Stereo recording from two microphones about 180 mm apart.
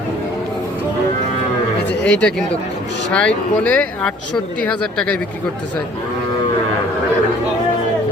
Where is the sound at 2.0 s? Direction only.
75° left (ahead or behind).